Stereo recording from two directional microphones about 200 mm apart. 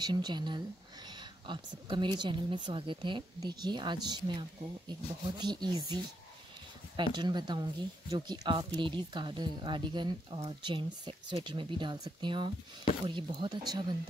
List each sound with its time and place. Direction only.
0.0 s speech: 20° right (ahead or behind)
7.0 s speech: 20° right (ahead or behind)